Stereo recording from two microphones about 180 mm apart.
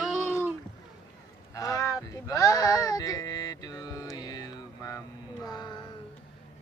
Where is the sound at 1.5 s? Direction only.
20° left (ahead or behind).